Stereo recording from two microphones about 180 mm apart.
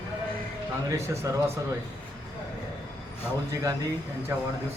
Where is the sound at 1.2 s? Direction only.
20° right (ahead or behind).